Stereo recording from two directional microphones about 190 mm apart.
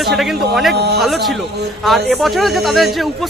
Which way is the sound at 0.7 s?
60° right (ahead or behind).